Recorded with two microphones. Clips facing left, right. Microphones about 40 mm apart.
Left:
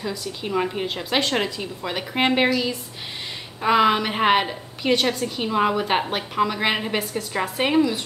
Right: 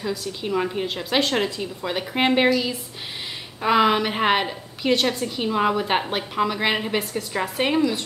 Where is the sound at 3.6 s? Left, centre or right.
Centre.